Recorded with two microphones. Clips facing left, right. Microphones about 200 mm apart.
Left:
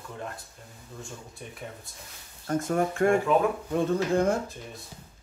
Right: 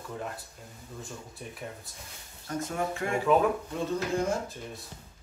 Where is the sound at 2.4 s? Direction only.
55° left (ahead or behind).